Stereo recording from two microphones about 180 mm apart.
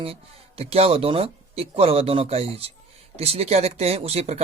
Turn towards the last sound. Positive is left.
turn(degrees=-35)  # may be behind; listen again after turning